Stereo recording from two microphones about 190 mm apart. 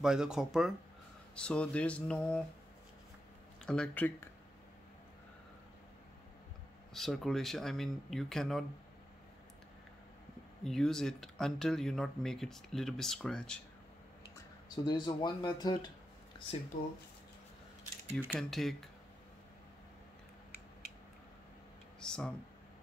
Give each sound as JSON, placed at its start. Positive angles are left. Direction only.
{"t": 0.0, "sound": "speech", "side_deg": -5}
{"t": 3.6, "sound": "speech", "side_deg": 5}
{"t": 6.9, "sound": "speech", "side_deg": 0}
{"t": 10.6, "sound": "speech", "side_deg": 0}
{"t": 14.9, "sound": "speech", "side_deg": 25}
{"t": 16.7, "sound": "speech", "side_deg": 50}
{"t": 18.1, "sound": "speech", "side_deg": 5}
{"t": 22.0, "sound": "a sound", "side_deg": 5}